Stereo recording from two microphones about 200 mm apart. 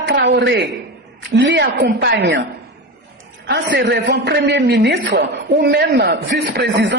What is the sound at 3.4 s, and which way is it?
A man's voice, 55° right (ahead or behind).